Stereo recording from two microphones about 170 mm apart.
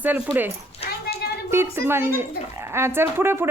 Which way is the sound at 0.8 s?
65° left (ahead or behind).